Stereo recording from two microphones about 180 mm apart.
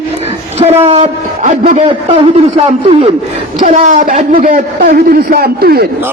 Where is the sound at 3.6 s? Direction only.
45° right (ahead or behind).